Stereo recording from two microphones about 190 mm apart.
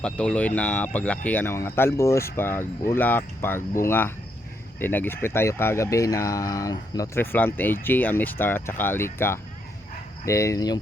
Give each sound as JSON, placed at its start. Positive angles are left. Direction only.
{"t": 0.0, "sound": "speech", "side_deg": 5}